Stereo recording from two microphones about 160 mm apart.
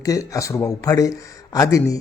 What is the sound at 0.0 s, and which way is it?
A man's voice, 20° left (ahead or behind).